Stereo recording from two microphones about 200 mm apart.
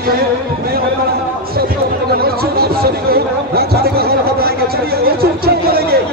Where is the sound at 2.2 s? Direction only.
50° right (ahead or behind).